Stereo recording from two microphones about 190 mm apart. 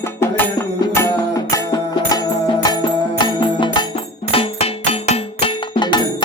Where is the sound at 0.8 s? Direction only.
15° left (ahead or behind).